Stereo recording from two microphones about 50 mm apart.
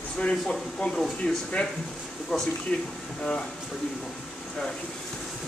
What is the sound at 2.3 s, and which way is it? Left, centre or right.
Speech, centre.